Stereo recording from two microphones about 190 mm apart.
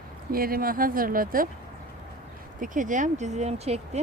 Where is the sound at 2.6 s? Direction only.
45° right (ahead or behind).